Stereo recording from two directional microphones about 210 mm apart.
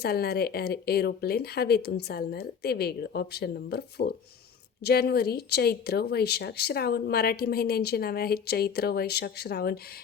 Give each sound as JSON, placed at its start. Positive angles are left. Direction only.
{"t": 0.0, "sound": "speech", "side_deg": 50}